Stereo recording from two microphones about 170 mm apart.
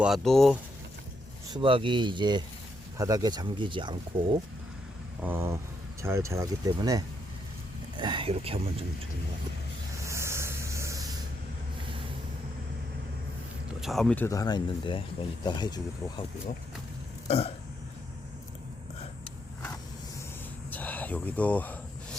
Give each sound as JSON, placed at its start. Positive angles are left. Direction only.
{"t": 0.0, "sound": "speech", "side_deg": 0}
{"t": 1.5, "sound": "speech", "side_deg": -30}
{"t": 5.2, "sound": "speech", "side_deg": -15}
{"t": 10.0, "sound": "a sound", "side_deg": -15}
{"t": 13.8, "sound": "speech", "side_deg": 0}
{"t": 14.3, "sound": "speech", "side_deg": 20}
{"t": 17.2, "sound": "burping", "side_deg": 35}
{"t": 20.7, "sound": "a sound", "side_deg": 10}